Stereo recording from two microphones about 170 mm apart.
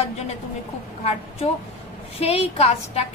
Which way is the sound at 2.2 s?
35° left (ahead or behind).